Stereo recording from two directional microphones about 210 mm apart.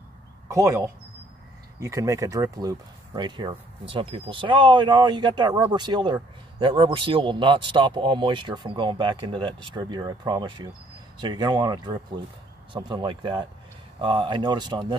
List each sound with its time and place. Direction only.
0.5 s a man's voice: 15° right (ahead or behind)